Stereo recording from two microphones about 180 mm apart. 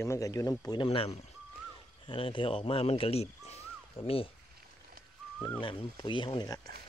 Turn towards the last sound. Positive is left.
turn(degrees=20)  # may be behind; listen again after turning